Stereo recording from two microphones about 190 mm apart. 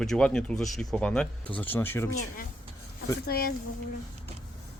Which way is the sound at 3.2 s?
55° left (ahead or behind).